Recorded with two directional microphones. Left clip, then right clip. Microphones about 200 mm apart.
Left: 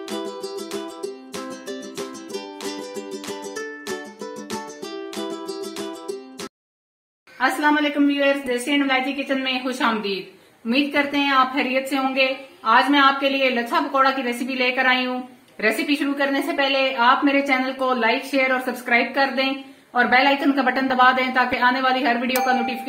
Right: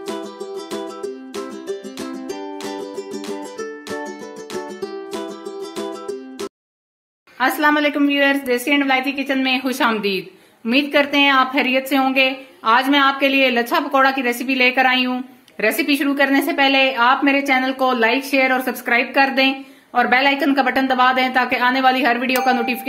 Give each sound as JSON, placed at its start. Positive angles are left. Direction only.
{"t": 7.3, "sound": "a woman's voice", "side_deg": -55}